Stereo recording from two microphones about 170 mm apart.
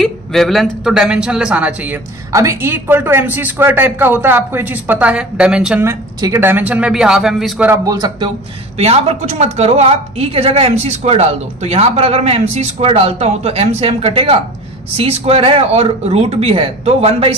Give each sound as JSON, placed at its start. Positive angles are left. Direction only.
{"t": 0.0, "sound": "speech", "side_deg": 0}
{"t": 5.9, "sound": "speech", "side_deg": -15}
{"t": 7.8, "sound": "speech", "side_deg": -20}
{"t": 8.7, "sound": "a woman's voice", "side_deg": -35}